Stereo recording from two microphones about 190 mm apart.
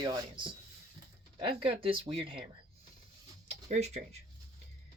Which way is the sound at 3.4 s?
35° right (ahead or behind).